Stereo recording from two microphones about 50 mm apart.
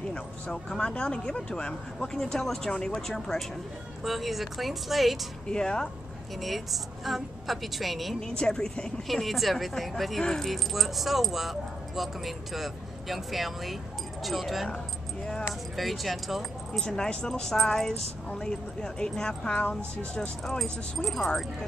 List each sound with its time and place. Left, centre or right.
0.5 s speech: centre
5.5 s speech: centre
6.4 s speech: centre
8.2 s speech: centre
9.0 s speech: centre
15.7 s speech: centre
16.8 s speech: centre
20.2 s speech: centre